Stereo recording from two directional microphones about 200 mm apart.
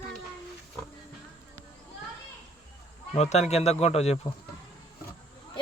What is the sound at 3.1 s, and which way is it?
Speech, 35° left (ahead or behind).